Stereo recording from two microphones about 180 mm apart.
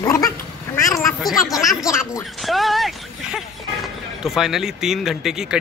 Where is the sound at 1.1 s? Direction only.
Centre (ahead or behind).